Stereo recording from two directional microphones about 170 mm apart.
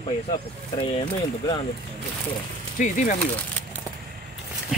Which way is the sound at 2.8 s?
50° left (ahead or behind).